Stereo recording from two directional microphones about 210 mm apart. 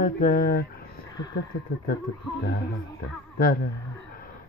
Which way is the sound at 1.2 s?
20° left (ahead or behind).